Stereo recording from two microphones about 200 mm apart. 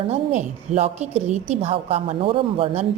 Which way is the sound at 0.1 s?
35° right (ahead or behind).